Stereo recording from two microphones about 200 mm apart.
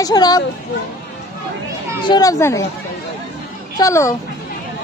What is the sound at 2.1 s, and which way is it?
Speech, 20° left (ahead or behind).